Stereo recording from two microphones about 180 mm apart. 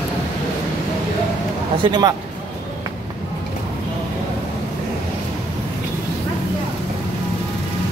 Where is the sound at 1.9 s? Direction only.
20° right (ahead or behind).